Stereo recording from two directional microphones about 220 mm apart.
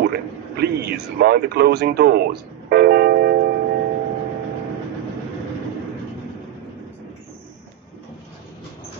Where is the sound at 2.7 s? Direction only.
45° right (ahead or behind).